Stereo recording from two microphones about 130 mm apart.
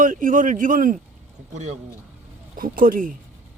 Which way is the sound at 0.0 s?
90° right.